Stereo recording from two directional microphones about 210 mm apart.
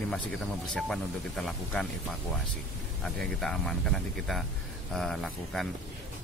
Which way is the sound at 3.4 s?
5° left (ahead or behind).